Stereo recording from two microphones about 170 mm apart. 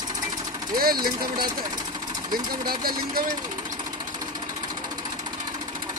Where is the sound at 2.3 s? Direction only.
25° right (ahead or behind).